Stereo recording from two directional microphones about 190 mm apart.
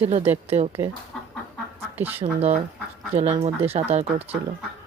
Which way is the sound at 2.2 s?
35° right (ahead or behind).